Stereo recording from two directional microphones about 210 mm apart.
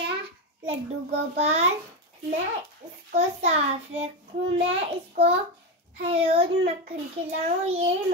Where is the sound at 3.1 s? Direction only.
30° right (ahead or behind).